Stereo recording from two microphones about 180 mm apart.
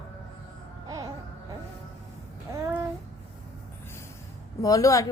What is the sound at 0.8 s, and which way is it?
Music, 20° right (ahead or behind).